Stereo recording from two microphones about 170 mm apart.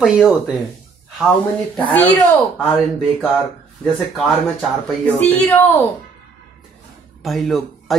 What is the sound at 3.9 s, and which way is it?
A woman's voice, centre (ahead or behind).